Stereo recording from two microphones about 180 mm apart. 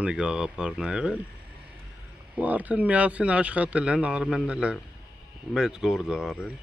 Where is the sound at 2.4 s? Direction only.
10° right (ahead or behind).